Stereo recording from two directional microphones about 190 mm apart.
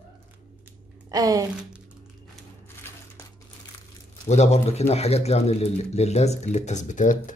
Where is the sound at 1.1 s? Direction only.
20° right (ahead or behind).